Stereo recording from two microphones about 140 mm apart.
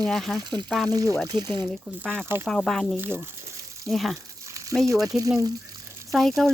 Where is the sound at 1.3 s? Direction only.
30° right (ahead or behind).